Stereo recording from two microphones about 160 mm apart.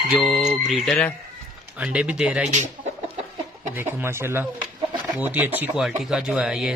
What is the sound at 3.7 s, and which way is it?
Speech, 15° right (ahead or behind).